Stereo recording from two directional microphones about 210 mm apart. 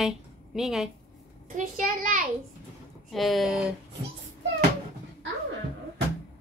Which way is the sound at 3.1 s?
Centre (ahead or behind).